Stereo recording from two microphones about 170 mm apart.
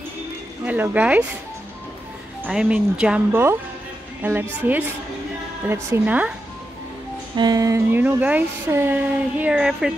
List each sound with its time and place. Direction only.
0.7 s speech: 10° right (ahead or behind)
2.4 s a woman's voice: 5° right (ahead or behind)
7.3 s speech: 20° right (ahead or behind); by 9.9 s 5° right (ahead or behind)